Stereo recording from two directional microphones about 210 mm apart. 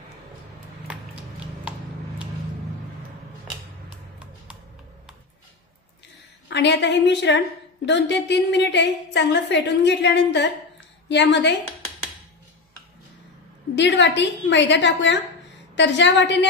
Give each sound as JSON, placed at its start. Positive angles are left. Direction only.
{"t": 6.5, "sound": "a woman's voice", "side_deg": 55}
{"t": 13.7, "sound": "a woman's voice", "side_deg": 55}